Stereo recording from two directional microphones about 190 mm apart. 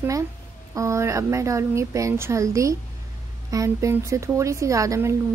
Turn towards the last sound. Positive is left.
turn(degrees=-15)  # may be behind; listen again after turning